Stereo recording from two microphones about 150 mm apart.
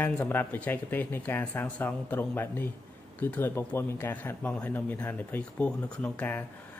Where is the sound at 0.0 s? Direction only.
15° left (ahead or behind).